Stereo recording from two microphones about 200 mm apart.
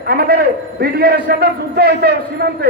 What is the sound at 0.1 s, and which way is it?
A man's voice, 50° right (ahead or behind).